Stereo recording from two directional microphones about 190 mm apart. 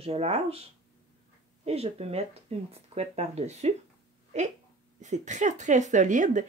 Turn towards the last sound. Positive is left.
turn(degrees=-40)  # may be behind; listen again after turning